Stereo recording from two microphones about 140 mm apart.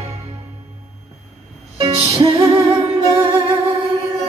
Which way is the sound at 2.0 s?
40° right (ahead or behind).